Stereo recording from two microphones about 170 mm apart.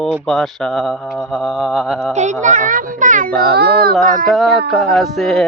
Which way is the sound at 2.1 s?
45° right (ahead or behind).